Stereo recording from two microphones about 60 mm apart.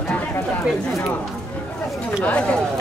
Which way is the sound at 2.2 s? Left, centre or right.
Left.